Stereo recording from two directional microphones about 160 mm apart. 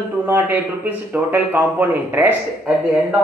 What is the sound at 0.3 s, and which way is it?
Speech, 10° right (ahead or behind).